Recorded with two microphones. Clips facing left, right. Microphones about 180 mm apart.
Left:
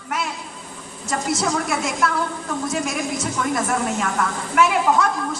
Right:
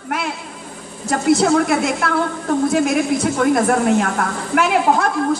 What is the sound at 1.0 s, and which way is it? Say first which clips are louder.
A woman's voice: right 8 dB; 55° right (ahead or behind).